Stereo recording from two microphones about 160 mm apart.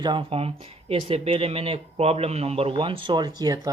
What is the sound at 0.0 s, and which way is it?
Speech, 30° right (ahead or behind).